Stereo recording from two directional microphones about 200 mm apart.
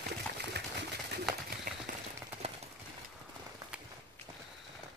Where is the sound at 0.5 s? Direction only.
55° right (ahead or behind).